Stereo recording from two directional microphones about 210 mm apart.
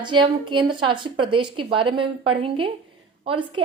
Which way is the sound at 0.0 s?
20° right (ahead or behind).